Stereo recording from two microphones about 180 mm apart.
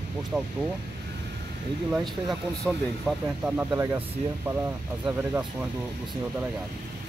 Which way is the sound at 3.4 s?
10° right (ahead or behind).